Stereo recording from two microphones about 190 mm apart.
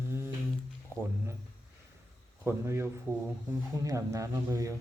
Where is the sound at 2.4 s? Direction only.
10° right (ahead or behind).